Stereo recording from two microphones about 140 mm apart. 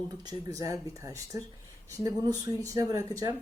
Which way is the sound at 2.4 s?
25° right (ahead or behind).